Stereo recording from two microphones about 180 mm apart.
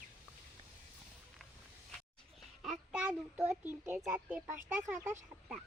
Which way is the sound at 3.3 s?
10° right (ahead or behind).